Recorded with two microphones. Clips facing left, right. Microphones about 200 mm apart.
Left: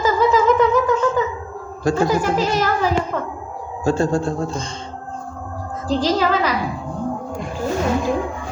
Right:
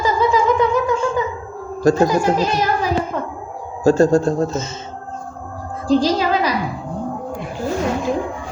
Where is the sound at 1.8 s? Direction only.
40° right (ahead or behind).